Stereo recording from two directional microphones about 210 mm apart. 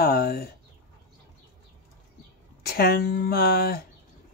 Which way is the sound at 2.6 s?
45° left (ahead or behind).